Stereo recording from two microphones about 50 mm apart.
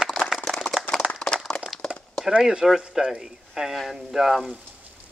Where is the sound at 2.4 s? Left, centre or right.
Centre.